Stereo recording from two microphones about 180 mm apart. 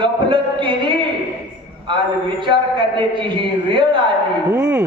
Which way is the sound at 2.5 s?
25° right (ahead or behind).